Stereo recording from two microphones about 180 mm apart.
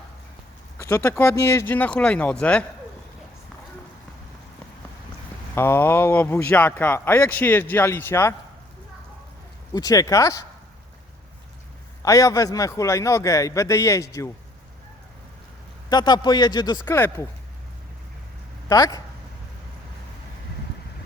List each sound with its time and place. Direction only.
0.8 s speech: 15° left (ahead or behind)
5.5 s speech: 15° left (ahead or behind)
9.7 s speech: 20° left (ahead or behind)
12.0 s speech: 20° left (ahead or behind)
15.9 s speech: 25° left (ahead or behind)
18.7 s speech: 20° left (ahead or behind)